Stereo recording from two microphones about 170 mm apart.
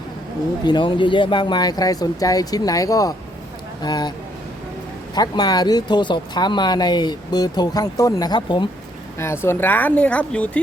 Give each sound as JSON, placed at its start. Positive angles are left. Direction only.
{"t": 0.6, "sound": "speech", "side_deg": 25}
{"t": 5.1, "sound": "speech", "side_deg": 25}
{"t": 9.1, "sound": "speech", "side_deg": 15}